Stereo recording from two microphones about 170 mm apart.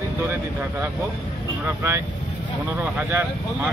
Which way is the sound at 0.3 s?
10° right (ahead or behind).